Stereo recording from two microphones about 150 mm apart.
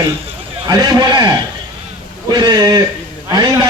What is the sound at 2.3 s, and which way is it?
Speech, 30° right (ahead or behind).